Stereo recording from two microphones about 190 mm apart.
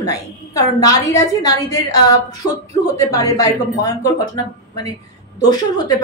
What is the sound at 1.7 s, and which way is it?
A woman's voice, 20° left (ahead or behind).